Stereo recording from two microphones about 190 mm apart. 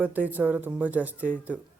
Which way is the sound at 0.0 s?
10° right (ahead or behind).